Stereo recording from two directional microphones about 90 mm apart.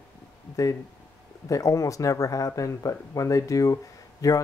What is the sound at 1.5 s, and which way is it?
Speech, 35° left (ahead or behind).